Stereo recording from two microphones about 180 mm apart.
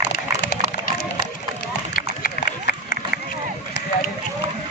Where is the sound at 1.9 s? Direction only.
55° left (ahead or behind).